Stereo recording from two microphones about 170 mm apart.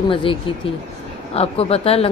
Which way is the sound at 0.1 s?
30° left (ahead or behind).